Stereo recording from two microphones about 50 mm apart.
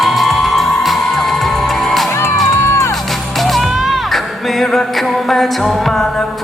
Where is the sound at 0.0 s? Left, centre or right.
Centre.